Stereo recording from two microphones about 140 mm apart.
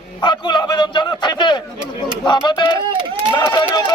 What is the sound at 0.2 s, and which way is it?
A man's voice, 35° left (ahead or behind).